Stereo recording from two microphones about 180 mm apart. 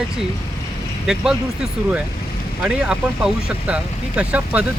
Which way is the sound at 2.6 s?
5° right (ahead or behind).